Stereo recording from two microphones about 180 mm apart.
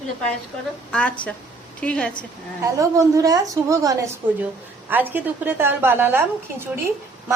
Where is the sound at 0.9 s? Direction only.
5° left (ahead or behind).